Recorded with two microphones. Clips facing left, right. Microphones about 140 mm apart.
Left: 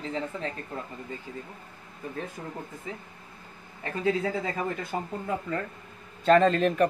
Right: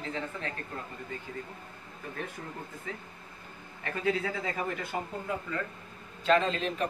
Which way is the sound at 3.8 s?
30° left (ahead or behind).